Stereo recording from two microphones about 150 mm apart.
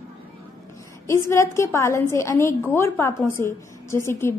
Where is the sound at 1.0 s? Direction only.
20° left (ahead or behind).